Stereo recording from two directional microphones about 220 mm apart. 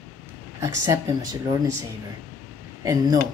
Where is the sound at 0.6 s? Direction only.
15° right (ahead or behind).